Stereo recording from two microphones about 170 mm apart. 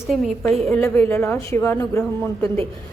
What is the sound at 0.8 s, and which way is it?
A woman's voice, 15° left (ahead or behind).